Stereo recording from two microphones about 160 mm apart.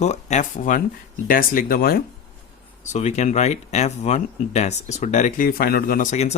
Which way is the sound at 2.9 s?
45° left (ahead or behind).